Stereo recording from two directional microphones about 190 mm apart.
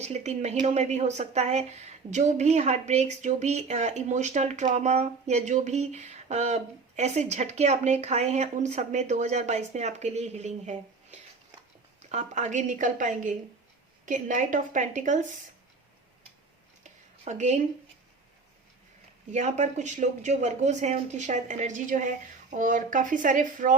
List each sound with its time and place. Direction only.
0.0 s a woman's voice: 35° right (ahead or behind)
16.8 s a sound: 40° right (ahead or behind)
19.3 s a woman's voice: 35° right (ahead or behind)